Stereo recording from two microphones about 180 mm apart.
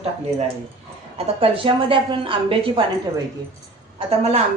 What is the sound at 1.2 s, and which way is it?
A woman's voice, 30° right (ahead or behind).